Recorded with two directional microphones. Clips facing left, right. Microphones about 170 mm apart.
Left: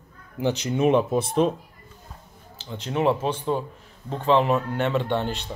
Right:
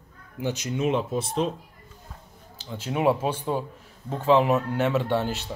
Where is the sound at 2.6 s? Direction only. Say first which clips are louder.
Even; 5° right (ahead or behind).